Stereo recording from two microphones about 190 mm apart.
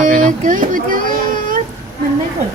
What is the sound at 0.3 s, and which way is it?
Speech, 45° right (ahead or behind).